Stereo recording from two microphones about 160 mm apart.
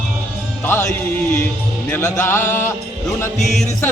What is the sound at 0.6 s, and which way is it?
Music, 15° left (ahead or behind).